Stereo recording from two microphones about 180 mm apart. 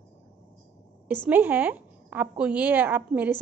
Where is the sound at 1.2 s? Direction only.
10° right (ahead or behind).